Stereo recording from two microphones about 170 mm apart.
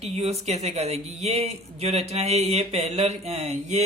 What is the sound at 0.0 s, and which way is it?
Speech, 40° right (ahead or behind).